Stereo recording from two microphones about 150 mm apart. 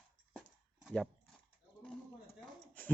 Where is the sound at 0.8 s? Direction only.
5° left (ahead or behind).